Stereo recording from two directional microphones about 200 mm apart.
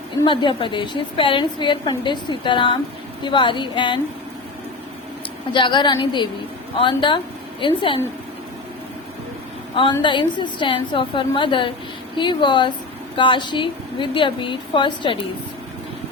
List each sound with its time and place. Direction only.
0.3 s a woman's voice: 25° left (ahead or behind)
5.5 s a woman's voice: 25° left (ahead or behind)
10.0 s a woman's voice: 25° left (ahead or behind)